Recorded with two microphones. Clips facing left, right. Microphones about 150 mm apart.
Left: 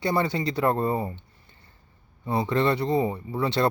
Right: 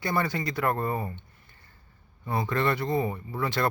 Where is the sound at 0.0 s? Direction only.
25° left (ahead or behind).